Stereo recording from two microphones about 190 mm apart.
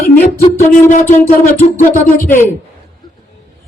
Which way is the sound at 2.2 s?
10° left (ahead or behind).